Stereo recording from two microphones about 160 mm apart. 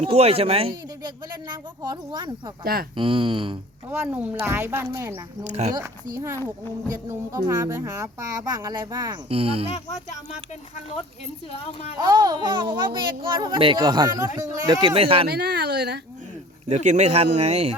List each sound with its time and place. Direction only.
0.0 s speech: 40° right (ahead or behind)
1.0 s a child's voice: 25° right (ahead or behind)
3.8 s speech: 10° right (ahead or behind)
5.4 s a man's voice: 45° right (ahead or behind)
5.7 s speech: 20° right (ahead or behind)
9.3 s speech: 35° right (ahead or behind)
11.5 s speech: 40° left (ahead or behind)
11.9 s a child's voice: 25° right (ahead or behind)
15.3 s speech: 90° right
16.6 s a man's voice: 45° right (ahead or behind)